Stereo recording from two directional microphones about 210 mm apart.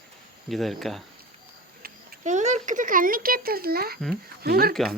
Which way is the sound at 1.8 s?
35° right (ahead or behind).